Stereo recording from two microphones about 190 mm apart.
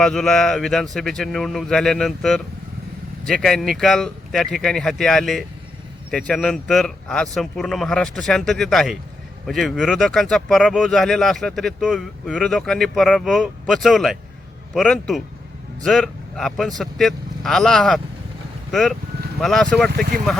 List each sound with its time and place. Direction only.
0.0 s speech: 5° left (ahead or behind)